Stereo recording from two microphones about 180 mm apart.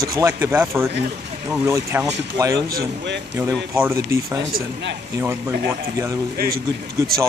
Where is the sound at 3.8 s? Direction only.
15° right (ahead or behind).